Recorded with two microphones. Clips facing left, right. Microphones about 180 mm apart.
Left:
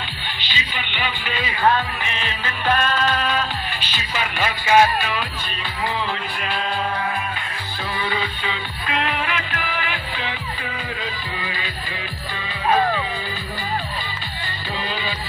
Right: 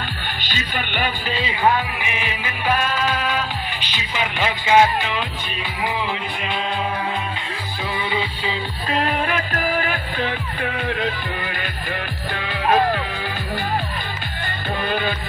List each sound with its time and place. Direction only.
0.4 s music: 45° right (ahead or behind)
1.6 s music: 15° right (ahead or behind)
8.5 s music: 35° right (ahead or behind); by 12.7 s 60° right (ahead or behind)
14.9 s music: 55° right (ahead or behind)